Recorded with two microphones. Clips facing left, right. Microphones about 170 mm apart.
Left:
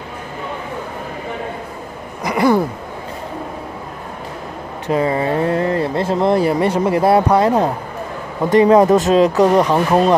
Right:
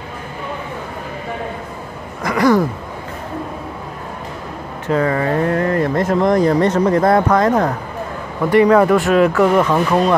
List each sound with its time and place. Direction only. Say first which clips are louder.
2.2 s a sound: right 1 dB; 25° left (ahead or behind)
4.8 s speech: even; 15° left (ahead or behind)
6.6 s speech: right 1 dB; 10° left (ahead or behind)